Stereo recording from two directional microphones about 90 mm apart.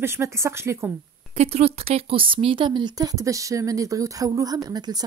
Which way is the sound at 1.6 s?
90° right.